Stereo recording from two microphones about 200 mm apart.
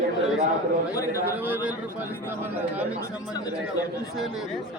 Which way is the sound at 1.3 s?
10° right (ahead or behind).